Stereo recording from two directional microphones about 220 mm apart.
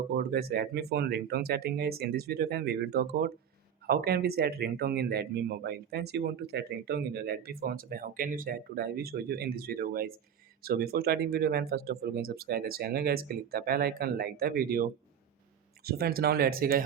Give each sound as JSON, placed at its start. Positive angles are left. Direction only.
{"t": 0.2, "sound": "speech", "side_deg": -45}